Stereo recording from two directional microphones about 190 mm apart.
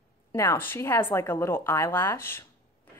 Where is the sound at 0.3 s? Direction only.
10° left (ahead or behind).